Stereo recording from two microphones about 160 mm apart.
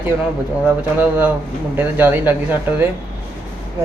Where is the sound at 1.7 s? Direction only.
10° right (ahead or behind).